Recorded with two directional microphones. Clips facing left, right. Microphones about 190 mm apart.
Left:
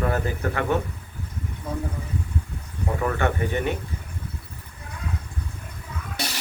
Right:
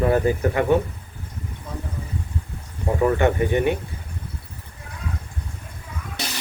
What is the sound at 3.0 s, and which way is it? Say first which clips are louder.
Speech: right 6 dB; 20° right (ahead or behind).